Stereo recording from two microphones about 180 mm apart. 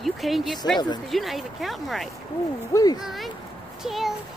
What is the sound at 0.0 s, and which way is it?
Speech, centre (ahead or behind).